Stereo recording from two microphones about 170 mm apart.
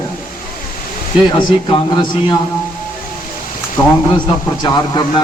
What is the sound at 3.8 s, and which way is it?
Speech, 25° left (ahead or behind).